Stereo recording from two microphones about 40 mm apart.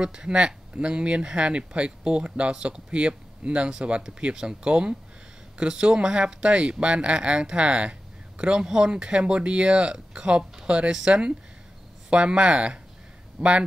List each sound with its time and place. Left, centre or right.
0.0 s speech: centre
8.5 s a man's voice: centre; by 13.7 s right